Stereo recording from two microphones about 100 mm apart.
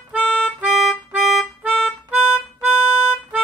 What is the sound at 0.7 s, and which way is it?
Music, centre (ahead or behind).